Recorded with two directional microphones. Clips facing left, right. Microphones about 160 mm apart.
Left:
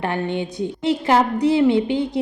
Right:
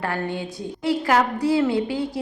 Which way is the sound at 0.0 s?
20° left (ahead or behind).